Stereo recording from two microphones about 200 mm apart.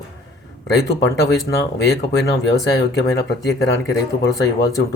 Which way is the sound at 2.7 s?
55° left (ahead or behind).